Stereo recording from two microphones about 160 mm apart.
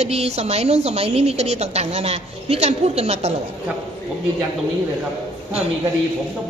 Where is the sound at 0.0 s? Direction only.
40° right (ahead or behind).